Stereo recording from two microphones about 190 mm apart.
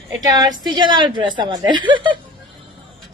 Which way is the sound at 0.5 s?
25° right (ahead or behind).